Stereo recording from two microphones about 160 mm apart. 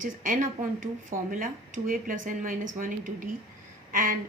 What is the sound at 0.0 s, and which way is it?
A woman's voice, 55° right (ahead or behind).